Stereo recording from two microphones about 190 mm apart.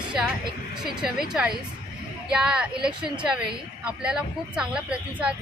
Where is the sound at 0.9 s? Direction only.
Centre (ahead or behind).